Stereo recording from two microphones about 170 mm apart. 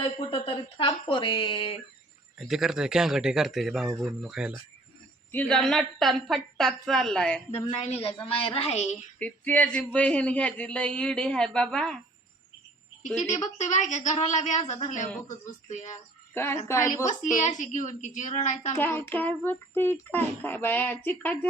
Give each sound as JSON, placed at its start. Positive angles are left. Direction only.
{"t": 0.0, "sound": "speech", "side_deg": 30}
{"t": 2.5, "sound": "a woman's voice", "side_deg": 0}
{"t": 7.6, "sound": "a woman's voice", "side_deg": 35}
{"t": 9.1, "sound": "a man's voice", "side_deg": 10}
{"t": 13.3, "sound": "a woman's voice", "side_deg": 45}
{"t": 16.3, "sound": "a woman's voice", "side_deg": 15}
{"t": 17.1, "sound": "a woman's voice", "side_deg": 45}
{"t": 18.7, "sound": "a man's voice", "side_deg": 10}